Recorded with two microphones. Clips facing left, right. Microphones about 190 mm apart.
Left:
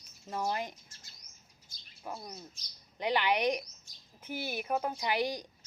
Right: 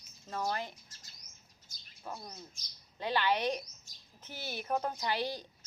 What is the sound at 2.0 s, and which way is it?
Speech, 10° left (ahead or behind).